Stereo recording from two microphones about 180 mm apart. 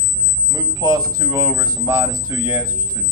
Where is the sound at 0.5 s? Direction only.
20° right (ahead or behind).